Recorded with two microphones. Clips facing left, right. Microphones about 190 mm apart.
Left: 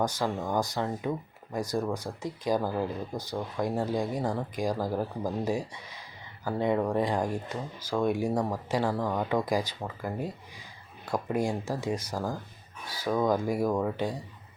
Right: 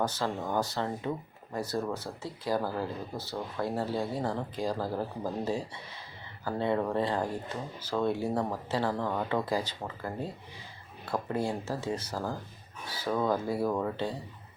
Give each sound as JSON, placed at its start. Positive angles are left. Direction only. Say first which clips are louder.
{"t": 0.0, "sound": "speech", "louder": "left 2 dB", "side_deg": 10}